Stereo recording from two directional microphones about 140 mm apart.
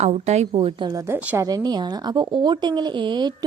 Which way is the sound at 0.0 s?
55° right (ahead or behind).